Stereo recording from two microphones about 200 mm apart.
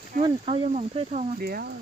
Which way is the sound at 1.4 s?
50° right (ahead or behind).